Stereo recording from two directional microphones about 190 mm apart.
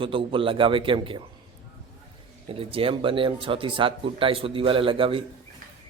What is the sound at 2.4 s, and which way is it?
A man's voice, 30° right (ahead or behind).